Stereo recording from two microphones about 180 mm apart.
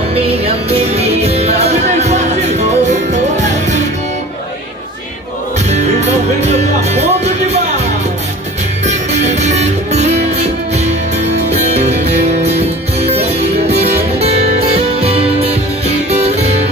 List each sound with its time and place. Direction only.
0.1 s music: 35° right (ahead or behind)
5.7 s music: 40° right (ahead or behind)
8.8 s music: 40° right (ahead or behind)